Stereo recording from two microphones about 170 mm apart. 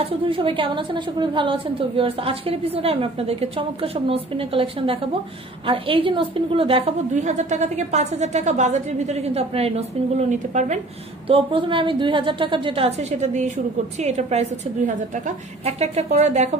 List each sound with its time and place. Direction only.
0.3 s a woman's voice: 30° right (ahead or behind)
11.2 s a woman's voice: 35° right (ahead or behind)